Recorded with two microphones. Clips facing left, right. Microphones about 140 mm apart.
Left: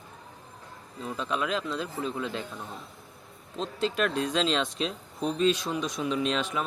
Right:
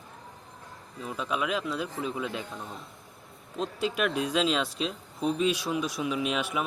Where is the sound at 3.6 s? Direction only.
10° right (ahead or behind).